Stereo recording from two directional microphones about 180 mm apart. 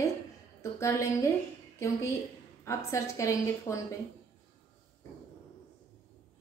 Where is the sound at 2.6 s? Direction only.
15° left (ahead or behind).